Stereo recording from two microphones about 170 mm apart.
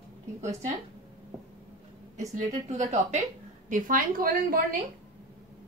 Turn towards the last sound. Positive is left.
turn(degrees=-60)  # may be behind; listen again after turning